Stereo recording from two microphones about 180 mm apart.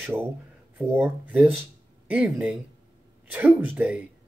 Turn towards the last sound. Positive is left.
turn(degrees=-10)  # may be behind; listen again after turning